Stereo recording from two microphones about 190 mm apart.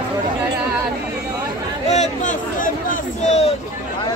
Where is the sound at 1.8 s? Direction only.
35° left (ahead or behind).